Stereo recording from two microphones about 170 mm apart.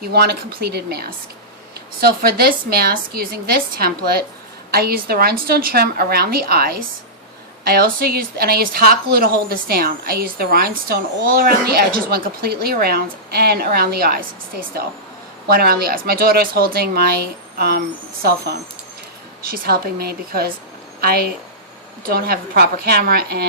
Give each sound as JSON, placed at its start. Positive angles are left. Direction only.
{"t": 0.0, "sound": "a woman's voice", "side_deg": -70}